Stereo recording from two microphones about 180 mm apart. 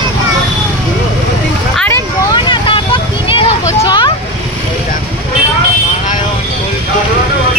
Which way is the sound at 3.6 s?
25° left (ahead or behind).